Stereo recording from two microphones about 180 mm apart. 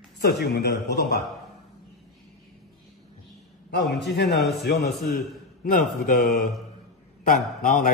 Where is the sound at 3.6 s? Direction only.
65° left (ahead or behind).